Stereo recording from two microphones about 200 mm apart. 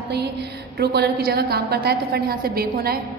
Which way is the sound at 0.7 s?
55° right (ahead or behind).